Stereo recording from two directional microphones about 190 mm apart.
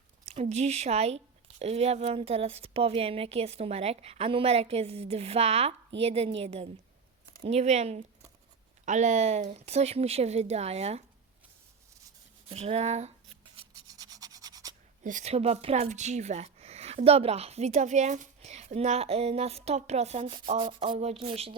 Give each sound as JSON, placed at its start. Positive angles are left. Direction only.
{"t": 0.3, "sound": "speech", "side_deg": -35}
{"t": 12.5, "sound": "rub", "side_deg": -30}
{"t": 15.0, "sound": "speech", "side_deg": -40}